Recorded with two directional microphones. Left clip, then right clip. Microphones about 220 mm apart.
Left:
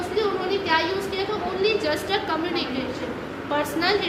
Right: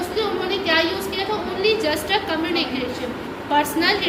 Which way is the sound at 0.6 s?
10° left (ahead or behind).